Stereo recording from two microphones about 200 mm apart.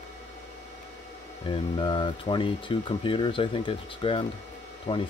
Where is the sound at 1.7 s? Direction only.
25° left (ahead or behind).